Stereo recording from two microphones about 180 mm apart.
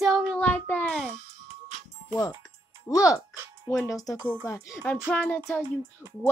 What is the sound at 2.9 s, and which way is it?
A child's voice, 20° left (ahead or behind).